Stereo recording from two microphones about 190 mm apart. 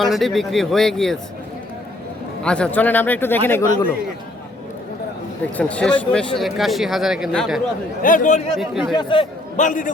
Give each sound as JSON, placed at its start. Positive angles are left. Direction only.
{"t": 0.0, "sound": "speech", "side_deg": 0}
{"t": 2.4, "sound": "speech", "side_deg": 5}
{"t": 5.5, "sound": "speech", "side_deg": 5}
{"t": 8.0, "sound": "a man's voice", "side_deg": 45}
{"t": 8.5, "sound": "speech", "side_deg": 0}
{"t": 9.0, "sound": "a man's voice", "side_deg": 25}
{"t": 9.6, "sound": "a man's voice", "side_deg": 45}